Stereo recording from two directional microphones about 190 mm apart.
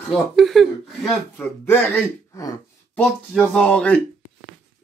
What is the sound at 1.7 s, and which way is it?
Music, 10° left (ahead or behind).